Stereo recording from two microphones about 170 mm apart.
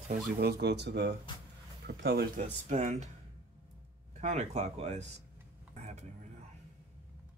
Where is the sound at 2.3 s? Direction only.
45° right (ahead or behind).